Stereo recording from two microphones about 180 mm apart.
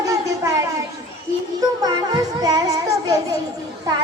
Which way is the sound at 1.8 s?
25° right (ahead or behind).